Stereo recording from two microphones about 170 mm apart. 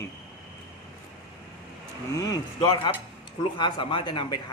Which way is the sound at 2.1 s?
20° left (ahead or behind).